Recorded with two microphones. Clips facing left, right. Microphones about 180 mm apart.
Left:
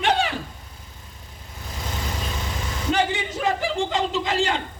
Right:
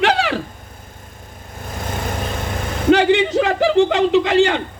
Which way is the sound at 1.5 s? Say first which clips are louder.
Right 6 dB; 50° right (ahead or behind).